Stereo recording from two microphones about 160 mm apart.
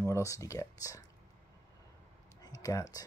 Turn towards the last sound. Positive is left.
turn(degrees=20)  # may be behind; listen again after turning